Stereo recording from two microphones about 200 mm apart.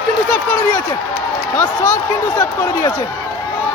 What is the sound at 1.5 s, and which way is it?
Speech, 20° left (ahead or behind).